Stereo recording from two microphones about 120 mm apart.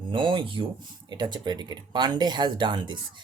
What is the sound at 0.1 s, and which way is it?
Speech, 40° right (ahead or behind).